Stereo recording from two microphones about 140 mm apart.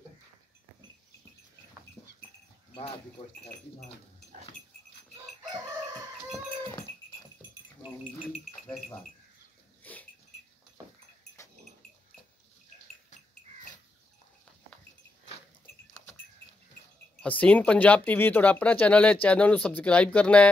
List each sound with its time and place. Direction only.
2.0 s goat: 25° left (ahead or behind)
9.8 s dog: 10° left (ahead or behind)
17.2 s speech: 10° left (ahead or behind)